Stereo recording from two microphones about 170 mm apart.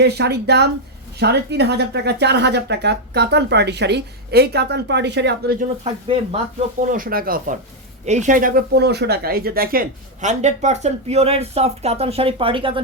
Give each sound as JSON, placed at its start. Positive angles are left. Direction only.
{"t": 0.0, "sound": "speech", "side_deg": -75}
{"t": 6.9, "sound": "speech", "side_deg": -55}
{"t": 8.0, "sound": "speech", "side_deg": -45}